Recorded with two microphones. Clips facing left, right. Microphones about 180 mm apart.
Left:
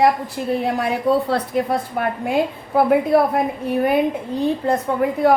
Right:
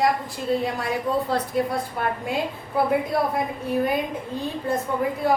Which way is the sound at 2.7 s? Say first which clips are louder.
Left 7 dB; 65° left (ahead or behind).